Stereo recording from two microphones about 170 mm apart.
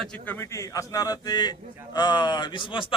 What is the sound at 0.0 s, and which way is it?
A man's voice, 5° left (ahead or behind).